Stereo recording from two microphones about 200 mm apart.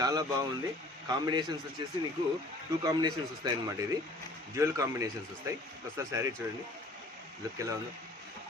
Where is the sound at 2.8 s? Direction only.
20° right (ahead or behind).